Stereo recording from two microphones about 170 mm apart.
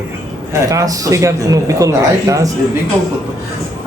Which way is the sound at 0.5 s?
20° right (ahead or behind).